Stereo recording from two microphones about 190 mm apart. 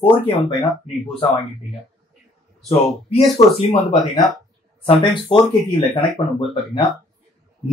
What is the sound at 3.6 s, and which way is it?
Speech, 30° left (ahead or behind).